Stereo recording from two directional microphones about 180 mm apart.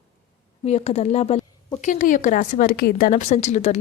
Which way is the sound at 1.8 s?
45° left (ahead or behind).